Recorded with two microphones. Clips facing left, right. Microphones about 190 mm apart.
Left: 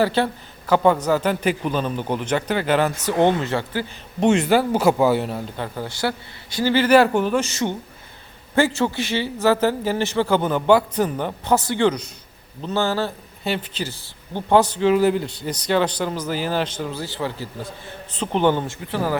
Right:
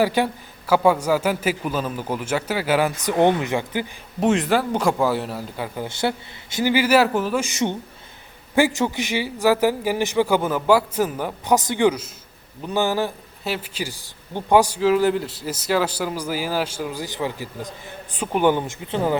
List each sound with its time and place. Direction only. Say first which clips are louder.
0.0 s speech: even; 15° right (ahead or behind)
4.2 s speech: left 2 dB; centre (ahead or behind)
11.5 s speech: right 1 dB; 15° right (ahead or behind)